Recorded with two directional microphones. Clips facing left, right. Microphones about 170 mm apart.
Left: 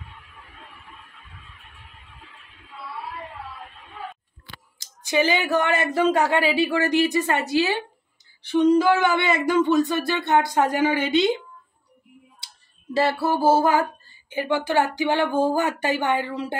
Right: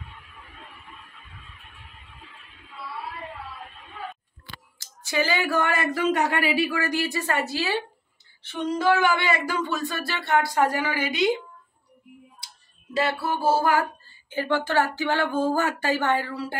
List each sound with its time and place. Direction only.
4.7 s speech: 20° left (ahead or behind)
9.0 s speech: 20° left (ahead or behind)
12.9 s speech: 30° left (ahead or behind)